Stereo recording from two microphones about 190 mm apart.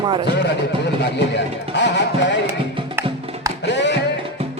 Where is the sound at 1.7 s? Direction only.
65° left (ahead or behind).